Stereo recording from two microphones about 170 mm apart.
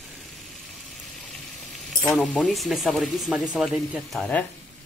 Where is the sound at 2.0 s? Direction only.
5° left (ahead or behind).